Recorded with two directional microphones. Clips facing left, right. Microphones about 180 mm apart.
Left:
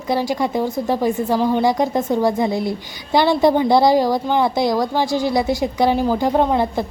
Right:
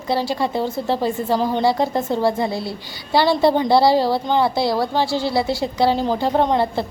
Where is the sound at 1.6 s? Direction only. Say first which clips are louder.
Left 1 dB; 15° left (ahead or behind).